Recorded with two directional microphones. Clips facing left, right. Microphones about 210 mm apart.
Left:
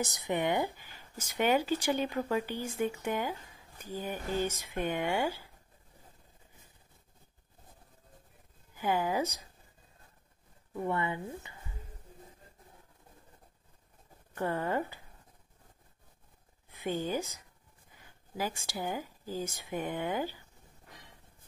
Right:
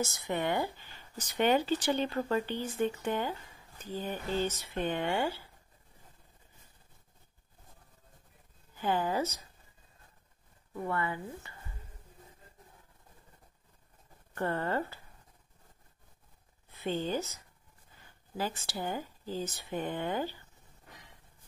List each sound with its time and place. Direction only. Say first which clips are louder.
0.0 s speech: left 1 dB; 15° left (ahead or behind)
8.7 s speech: even; 10° left (ahead or behind)
10.9 s speech: left 1 dB; 20° left (ahead or behind)
14.3 s speech: even; 10° left (ahead or behind)
16.7 s speech: even; 10° left (ahead or behind)